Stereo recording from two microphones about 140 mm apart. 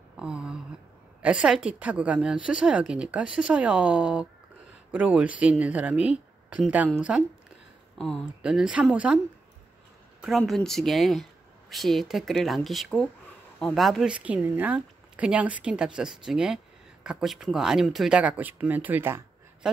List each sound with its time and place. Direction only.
0.2 s a sound: 5° right (ahead or behind)
1.2 s a woman's voice: 5° right (ahead or behind)
8.4 s a woman's voice: 5° right (ahead or behind)
10.2 s a woman's voice: centre (ahead or behind); by 19.2 s 15° right (ahead or behind)
19.6 s speech: 5° right (ahead or behind)